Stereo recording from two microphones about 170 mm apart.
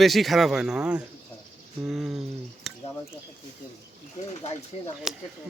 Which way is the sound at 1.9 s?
Centre (ahead or behind).